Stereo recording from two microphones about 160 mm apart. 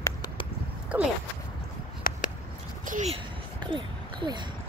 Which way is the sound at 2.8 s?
55° right (ahead or behind).